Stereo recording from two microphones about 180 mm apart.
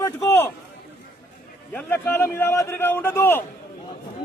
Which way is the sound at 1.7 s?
10° left (ahead or behind).